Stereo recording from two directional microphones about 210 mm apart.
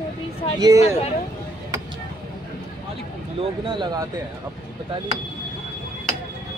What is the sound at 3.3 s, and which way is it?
Speech, 20° right (ahead or behind).